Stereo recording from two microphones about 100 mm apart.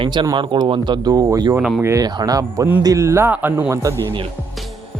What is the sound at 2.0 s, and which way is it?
Speech, 40° right (ahead or behind).